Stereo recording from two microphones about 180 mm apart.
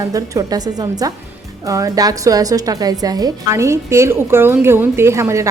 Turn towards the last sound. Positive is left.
turn(degrees=-15)  # may be behind; listen again after turning